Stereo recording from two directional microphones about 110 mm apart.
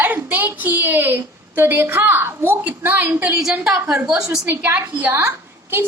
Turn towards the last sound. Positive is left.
turn(degrees=-20)  # may be behind; listen again after turning